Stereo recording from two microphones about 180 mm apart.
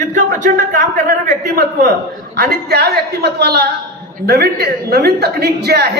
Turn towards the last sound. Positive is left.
turn(degrees=-65)  # may be behind; listen again after turning